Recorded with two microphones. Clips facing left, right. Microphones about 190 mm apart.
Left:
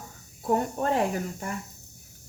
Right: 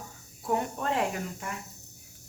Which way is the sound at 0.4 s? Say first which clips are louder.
Left 4 dB; 40° left (ahead or behind).